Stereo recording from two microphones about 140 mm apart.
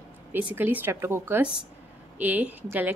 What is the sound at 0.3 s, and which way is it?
A woman's voice, 10° right (ahead or behind).